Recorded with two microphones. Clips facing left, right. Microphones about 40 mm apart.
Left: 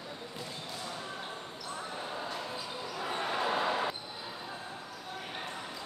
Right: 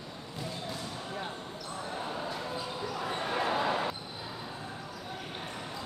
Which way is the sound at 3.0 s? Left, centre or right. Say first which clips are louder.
Even; centre.